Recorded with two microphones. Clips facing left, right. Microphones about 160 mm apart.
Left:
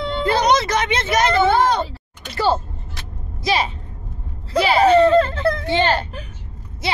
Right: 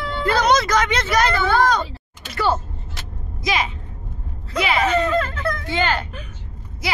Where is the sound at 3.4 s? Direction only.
30° left (ahead or behind).